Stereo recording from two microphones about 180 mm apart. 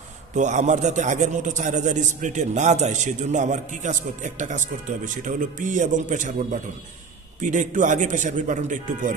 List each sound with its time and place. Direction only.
0.3 s a man's voice: 40° right (ahead or behind)